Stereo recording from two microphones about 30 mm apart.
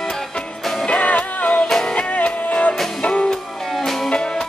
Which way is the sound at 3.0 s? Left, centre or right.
Left.